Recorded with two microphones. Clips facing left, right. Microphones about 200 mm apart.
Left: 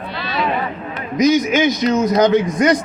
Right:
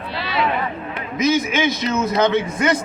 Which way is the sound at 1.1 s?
45° left (ahead or behind).